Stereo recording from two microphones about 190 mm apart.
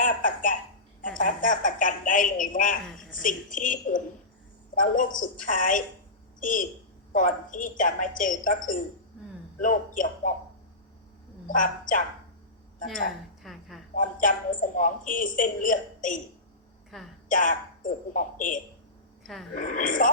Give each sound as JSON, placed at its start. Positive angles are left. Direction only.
{"t": 0.0, "sound": "a woman's voice", "side_deg": 45}
{"t": 11.4, "sound": "a woman's voice", "side_deg": 45}
{"t": 13.4, "sound": "a sound", "side_deg": 0}
{"t": 13.9, "sound": "a woman's voice", "side_deg": 45}
{"t": 16.9, "sound": "a woman's voice", "side_deg": 0}
{"t": 17.2, "sound": "a woman's voice", "side_deg": 45}
{"t": 19.2, "sound": "speech", "side_deg": 0}
{"t": 19.5, "sound": "a woman's voice", "side_deg": 45}